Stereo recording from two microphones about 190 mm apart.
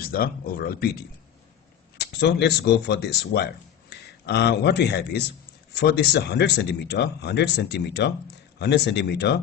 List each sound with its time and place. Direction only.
0.0 s speech: 50° left (ahead or behind)
2.1 s a man's voice: 60° left (ahead or behind)